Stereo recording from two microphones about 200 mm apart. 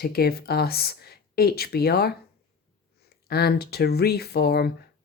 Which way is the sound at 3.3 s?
50° left (ahead or behind).